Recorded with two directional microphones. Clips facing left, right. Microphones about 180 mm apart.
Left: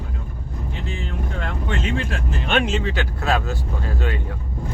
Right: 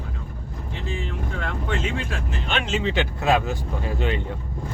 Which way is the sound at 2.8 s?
20° right (ahead or behind).